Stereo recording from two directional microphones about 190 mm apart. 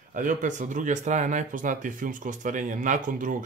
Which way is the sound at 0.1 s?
45° right (ahead or behind).